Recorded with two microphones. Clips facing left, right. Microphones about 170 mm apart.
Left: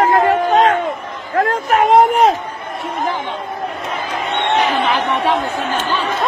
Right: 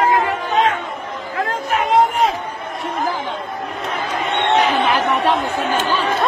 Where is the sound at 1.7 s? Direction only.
55° left (ahead or behind).